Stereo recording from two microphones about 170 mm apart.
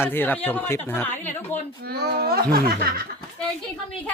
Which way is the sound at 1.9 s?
65° right (ahead or behind).